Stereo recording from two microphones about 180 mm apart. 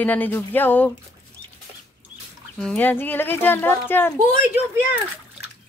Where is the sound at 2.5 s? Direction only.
5° left (ahead or behind).